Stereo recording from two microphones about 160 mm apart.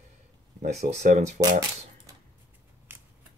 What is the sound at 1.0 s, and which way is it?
Speech, 45° right (ahead or behind).